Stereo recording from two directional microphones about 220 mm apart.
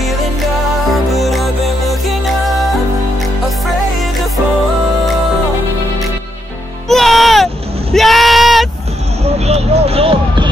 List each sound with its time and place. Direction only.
1.1 s music: centre (ahead or behind)
6.9 s music: centre (ahead or behind)
7.9 s a sound: centre (ahead or behind)
9.2 s vehicle: 30° right (ahead or behind)